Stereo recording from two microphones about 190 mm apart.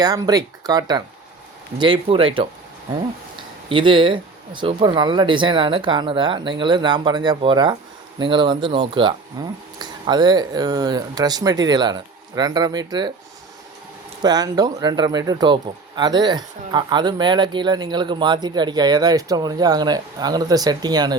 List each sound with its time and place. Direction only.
0.0 s a man's voice: 20° right (ahead or behind)
3.7 s a man's voice: 25° right (ahead or behind)
14.2 s a man's voice: 20° right (ahead or behind)